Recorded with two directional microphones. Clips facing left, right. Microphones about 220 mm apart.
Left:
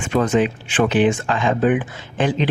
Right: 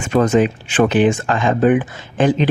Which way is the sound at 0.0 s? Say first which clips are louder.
Right 3 dB; 40° right (ahead or behind).